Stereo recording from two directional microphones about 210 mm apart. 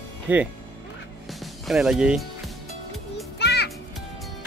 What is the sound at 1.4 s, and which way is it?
Music, centre (ahead or behind).